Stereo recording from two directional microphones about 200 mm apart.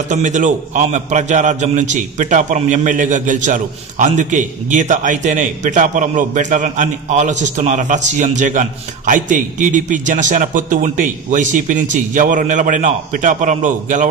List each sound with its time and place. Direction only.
0.1 s a man's voice: 40° right (ahead or behind)